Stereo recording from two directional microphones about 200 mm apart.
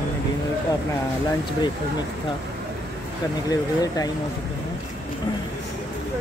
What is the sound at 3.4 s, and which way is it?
Speech, 20° left (ahead or behind).